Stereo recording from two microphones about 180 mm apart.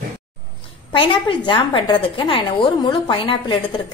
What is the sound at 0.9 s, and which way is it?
A woman's voice, 30° left (ahead or behind).